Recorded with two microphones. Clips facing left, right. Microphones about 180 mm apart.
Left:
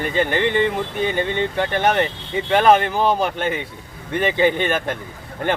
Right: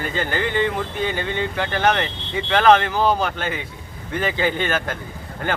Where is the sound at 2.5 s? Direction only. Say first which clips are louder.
Left 1 dB; 15° left (ahead or behind).